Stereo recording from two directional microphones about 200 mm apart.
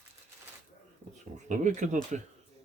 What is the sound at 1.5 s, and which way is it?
Speech, 40° right (ahead or behind).